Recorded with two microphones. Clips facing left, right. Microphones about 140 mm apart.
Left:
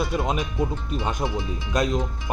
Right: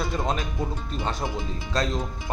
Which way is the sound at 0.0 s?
10° left (ahead or behind).